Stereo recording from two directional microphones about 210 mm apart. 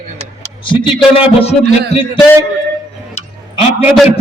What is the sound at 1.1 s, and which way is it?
Speech, 30° left (ahead or behind).